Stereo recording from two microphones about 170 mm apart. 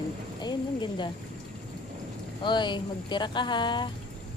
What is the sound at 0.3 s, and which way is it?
Speech, 25° left (ahead or behind).